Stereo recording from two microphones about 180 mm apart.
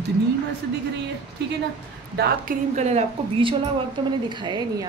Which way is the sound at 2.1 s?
45° right (ahead or behind).